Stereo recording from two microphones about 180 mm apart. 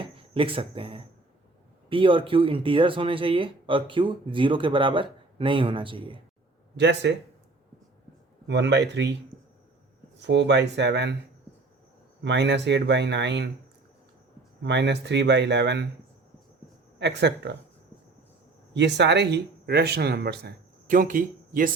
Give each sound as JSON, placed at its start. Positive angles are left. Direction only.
{"t": 0.0, "sound": "speech", "side_deg": -30}
{"t": 6.7, "sound": "speech", "side_deg": -70}
{"t": 8.4, "sound": "speech", "side_deg": -75}
{"t": 10.2, "sound": "speech", "side_deg": -75}
{"t": 12.2, "sound": "speech", "side_deg": -75}
{"t": 14.6, "sound": "speech", "side_deg": -75}
{"t": 17.0, "sound": "speech", "side_deg": -70}
{"t": 18.7, "sound": "speech", "side_deg": -75}